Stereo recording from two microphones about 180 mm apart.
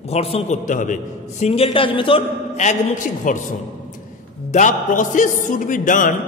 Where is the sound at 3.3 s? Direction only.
45° left (ahead or behind).